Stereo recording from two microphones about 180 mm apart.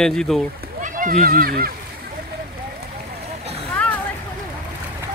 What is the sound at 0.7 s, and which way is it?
Speech, 45° right (ahead or behind).